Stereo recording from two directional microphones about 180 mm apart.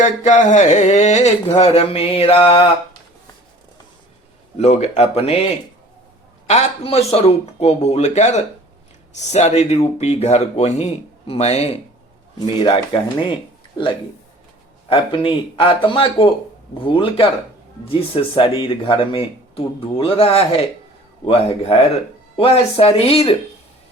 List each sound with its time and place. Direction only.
0.0 s speech: 40° left (ahead or behind)
4.5 s speech: 35° left (ahead or behind)
6.5 s speech: 35° left (ahead or behind)
14.8 s speech: 30° left (ahead or behind)